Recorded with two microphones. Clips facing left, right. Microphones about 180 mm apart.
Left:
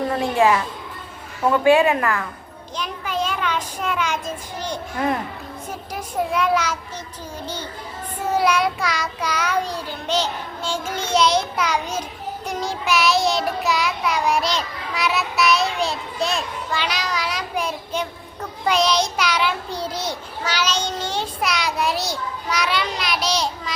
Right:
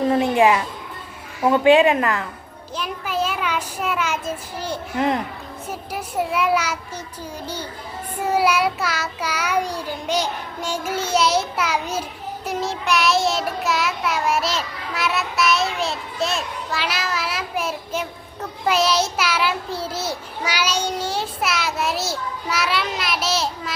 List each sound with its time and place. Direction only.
0.1 s children playing: 20° right (ahead or behind)
1.4 s a woman's voice: 15° right (ahead or behind)
2.7 s child singing: 5° right (ahead or behind)
4.9 s a woman's voice: 20° right (ahead or behind)
5.9 s child singing: 5° right (ahead or behind)